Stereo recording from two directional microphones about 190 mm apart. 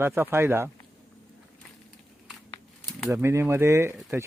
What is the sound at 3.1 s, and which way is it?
Speech, 15° right (ahead or behind).